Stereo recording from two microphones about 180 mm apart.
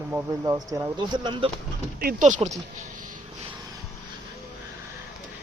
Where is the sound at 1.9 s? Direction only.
50° right (ahead or behind).